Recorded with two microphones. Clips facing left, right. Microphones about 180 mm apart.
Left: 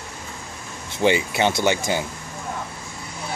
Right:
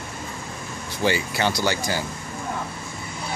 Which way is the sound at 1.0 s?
20° left (ahead or behind).